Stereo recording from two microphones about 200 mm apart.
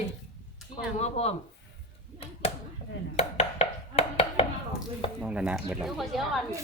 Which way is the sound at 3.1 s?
30° left (ahead or behind).